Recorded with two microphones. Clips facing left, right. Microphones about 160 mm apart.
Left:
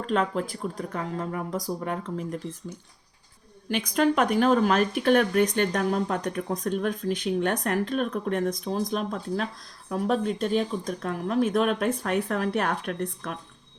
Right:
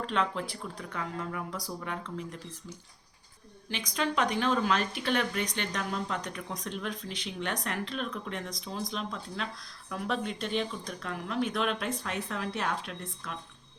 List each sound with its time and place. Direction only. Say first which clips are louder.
0.0 s speech: left 5 dB; 45° left (ahead or behind)
3.7 s speech: left 9 dB; 55° left (ahead or behind)